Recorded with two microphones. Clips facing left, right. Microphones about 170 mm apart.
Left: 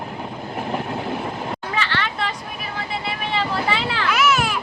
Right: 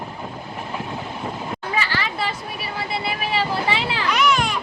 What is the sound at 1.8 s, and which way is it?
Children playing, 10° right (ahead or behind).